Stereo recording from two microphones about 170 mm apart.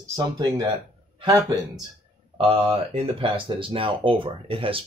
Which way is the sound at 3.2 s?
30° right (ahead or behind).